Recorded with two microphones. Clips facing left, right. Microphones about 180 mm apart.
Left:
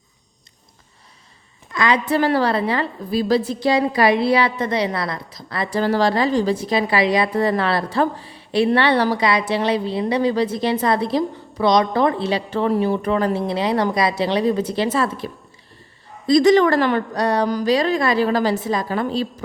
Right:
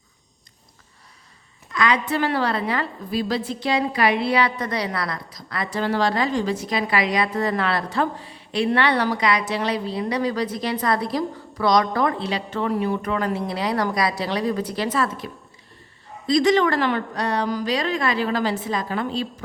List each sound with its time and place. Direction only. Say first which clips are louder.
1.7 s a woman's voice: left 3 dB; 30° left (ahead or behind)